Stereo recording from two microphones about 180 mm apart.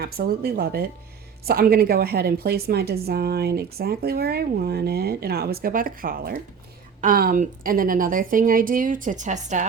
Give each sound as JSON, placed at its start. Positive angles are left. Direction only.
{"t": 0.0, "sound": "a woman's voice", "side_deg": -60}